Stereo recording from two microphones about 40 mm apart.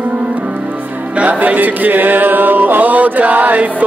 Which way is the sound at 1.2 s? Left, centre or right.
Right.